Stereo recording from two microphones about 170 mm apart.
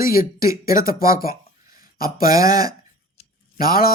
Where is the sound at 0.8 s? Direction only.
55° left (ahead or behind).